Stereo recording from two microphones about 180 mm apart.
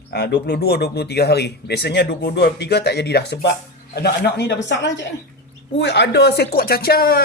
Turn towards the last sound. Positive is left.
turn(degrees=60)  # may be behind; listen again after turning